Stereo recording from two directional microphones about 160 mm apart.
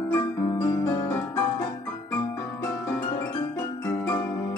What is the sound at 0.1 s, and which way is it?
Music, 20° left (ahead or behind).